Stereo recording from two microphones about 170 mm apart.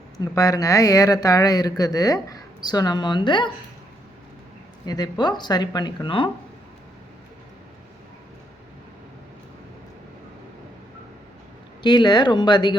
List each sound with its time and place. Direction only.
0.2 s speech: 20° left (ahead or behind)
4.9 s speech: 25° left (ahead or behind)
11.8 s speech: 25° left (ahead or behind)